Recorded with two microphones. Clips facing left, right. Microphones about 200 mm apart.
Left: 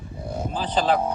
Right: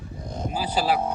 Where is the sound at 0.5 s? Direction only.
10° right (ahead or behind).